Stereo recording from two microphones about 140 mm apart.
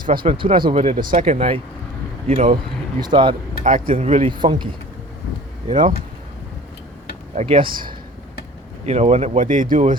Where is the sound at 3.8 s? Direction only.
40° right (ahead or behind).